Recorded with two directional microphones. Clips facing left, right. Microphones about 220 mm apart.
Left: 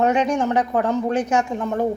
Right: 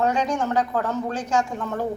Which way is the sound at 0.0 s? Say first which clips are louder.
Left 4 dB; 20° left (ahead or behind).